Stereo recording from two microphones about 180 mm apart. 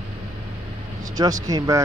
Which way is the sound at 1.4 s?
20° right (ahead or behind).